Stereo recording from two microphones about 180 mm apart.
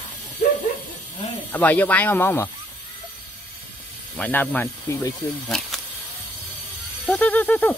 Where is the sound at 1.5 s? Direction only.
10° left (ahead or behind).